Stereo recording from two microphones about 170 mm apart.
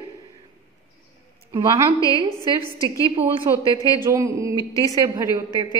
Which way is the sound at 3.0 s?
30° right (ahead or behind).